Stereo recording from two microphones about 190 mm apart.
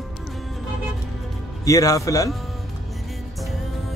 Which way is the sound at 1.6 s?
20° left (ahead or behind).